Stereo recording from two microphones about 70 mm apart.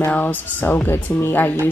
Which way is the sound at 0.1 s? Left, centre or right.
Left.